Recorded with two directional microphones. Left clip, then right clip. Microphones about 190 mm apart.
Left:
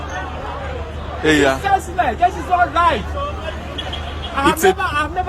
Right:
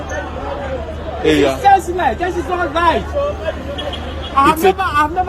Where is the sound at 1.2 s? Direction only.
15° left (ahead or behind).